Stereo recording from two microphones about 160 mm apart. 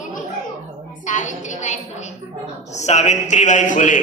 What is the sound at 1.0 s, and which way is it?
Speech, 50° left (ahead or behind).